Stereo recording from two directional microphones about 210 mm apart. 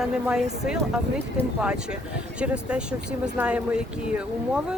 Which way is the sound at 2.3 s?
5° right (ahead or behind).